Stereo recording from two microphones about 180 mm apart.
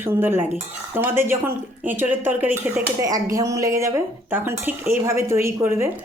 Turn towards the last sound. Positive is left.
turn(degrees=-15)  # may be behind; listen again after turning